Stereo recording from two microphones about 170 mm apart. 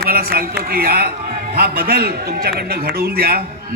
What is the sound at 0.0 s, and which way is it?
A man's voice, 60° right (ahead or behind).